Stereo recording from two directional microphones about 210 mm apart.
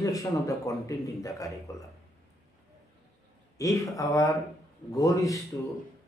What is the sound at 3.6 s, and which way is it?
Speech, 15° left (ahead or behind).